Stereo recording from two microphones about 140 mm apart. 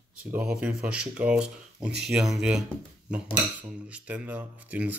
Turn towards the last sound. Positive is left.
turn(degrees=-10)  # may be behind; listen again after turning